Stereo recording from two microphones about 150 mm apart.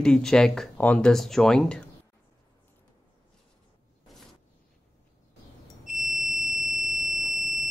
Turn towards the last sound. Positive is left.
turn(degrees=0)  # may be behind; listen again after turning